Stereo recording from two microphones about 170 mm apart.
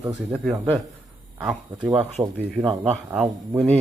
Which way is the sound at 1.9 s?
35° right (ahead or behind).